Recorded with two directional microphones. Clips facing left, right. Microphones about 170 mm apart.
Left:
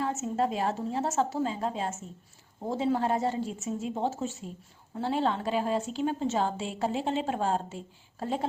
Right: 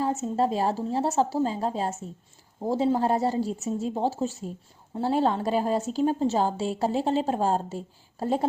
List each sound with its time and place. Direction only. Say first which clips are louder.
0.0 s a woman's voice: right 4 dB; 35° right (ahead or behind)